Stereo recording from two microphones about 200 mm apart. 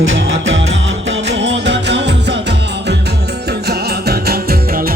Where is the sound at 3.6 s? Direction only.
50° right (ahead or behind).